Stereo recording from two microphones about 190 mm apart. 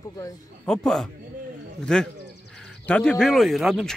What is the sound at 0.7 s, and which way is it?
Speech, centre (ahead or behind).